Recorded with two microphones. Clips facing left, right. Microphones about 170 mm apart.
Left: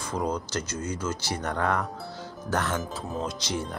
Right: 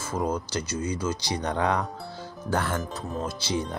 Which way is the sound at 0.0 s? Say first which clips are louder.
Right 1 dB; 5° right (ahead or behind).